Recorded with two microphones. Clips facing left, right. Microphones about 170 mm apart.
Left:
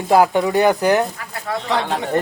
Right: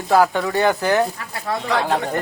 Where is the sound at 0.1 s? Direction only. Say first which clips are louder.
Left 2 dB; 20° left (ahead or behind).